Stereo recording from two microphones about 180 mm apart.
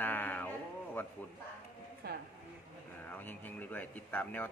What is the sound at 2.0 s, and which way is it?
Speech, 60° right (ahead or behind).